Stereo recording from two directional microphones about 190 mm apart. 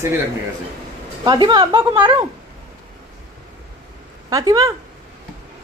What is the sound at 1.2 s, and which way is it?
Speech, 25° right (ahead or behind).